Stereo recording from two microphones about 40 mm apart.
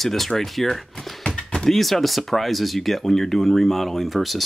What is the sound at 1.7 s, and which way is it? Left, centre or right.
Speech, centre.